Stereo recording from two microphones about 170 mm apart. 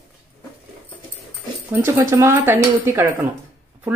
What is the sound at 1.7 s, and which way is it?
Speech, 15° right (ahead or behind).